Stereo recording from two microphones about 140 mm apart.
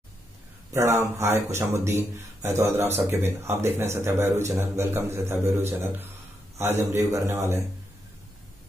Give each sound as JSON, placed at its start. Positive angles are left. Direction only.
{"t": 0.7, "sound": "speech", "side_deg": -20}